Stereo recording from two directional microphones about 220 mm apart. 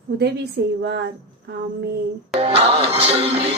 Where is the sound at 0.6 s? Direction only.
50° right (ahead or behind).